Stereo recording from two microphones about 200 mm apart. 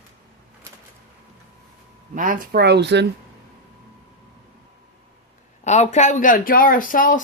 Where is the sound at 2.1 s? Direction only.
45° right (ahead or behind); by 3.0 s 60° right (ahead or behind).